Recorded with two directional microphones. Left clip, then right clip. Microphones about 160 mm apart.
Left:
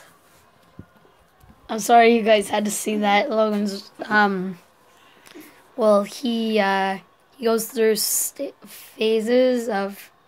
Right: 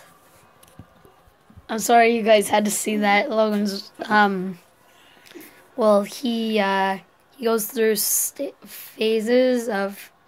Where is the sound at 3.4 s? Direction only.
10° right (ahead or behind).